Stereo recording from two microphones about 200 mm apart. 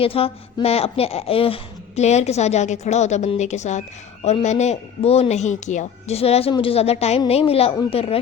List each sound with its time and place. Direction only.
0.0 s a woman's voice: 30° left (ahead or behind)